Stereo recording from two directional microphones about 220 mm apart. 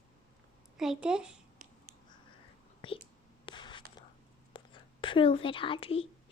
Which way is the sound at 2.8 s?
25° left (ahead or behind).